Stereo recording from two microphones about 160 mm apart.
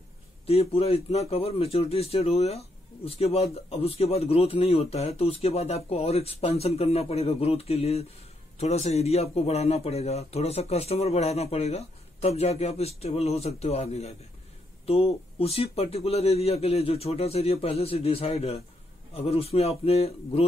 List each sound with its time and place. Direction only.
0.5 s speech: 40° left (ahead or behind)